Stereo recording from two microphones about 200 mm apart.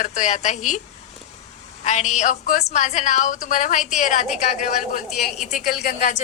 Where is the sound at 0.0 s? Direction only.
35° left (ahead or behind).